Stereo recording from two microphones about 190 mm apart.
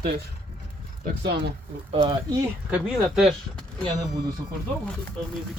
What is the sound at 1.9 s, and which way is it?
Speech, 25° right (ahead or behind).